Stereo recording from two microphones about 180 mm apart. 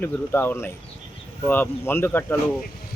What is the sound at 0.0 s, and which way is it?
Speech, 10° left (ahead or behind).